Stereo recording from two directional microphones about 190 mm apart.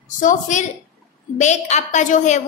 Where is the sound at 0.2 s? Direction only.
40° left (ahead or behind).